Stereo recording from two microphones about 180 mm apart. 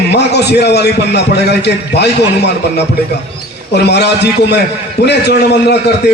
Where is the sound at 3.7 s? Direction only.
70° left (ahead or behind).